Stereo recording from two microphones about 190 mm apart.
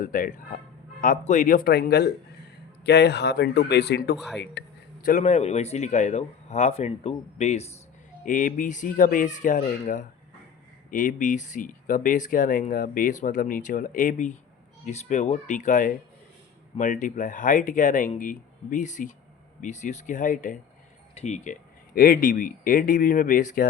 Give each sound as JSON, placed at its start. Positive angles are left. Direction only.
{"t": 0.0, "sound": "speech", "side_deg": 45}
{"t": 5.0, "sound": "speech", "side_deg": 40}
{"t": 8.2, "sound": "speech", "side_deg": 45}